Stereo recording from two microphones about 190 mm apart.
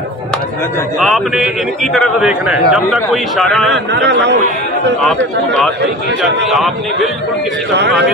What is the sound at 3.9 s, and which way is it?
Speech, 65° right (ahead or behind).